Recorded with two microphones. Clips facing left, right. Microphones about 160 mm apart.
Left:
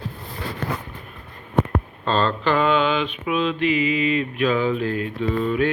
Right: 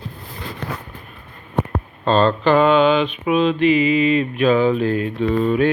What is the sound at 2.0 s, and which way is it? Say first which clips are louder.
Speech: right 6 dB; 50° right (ahead or behind).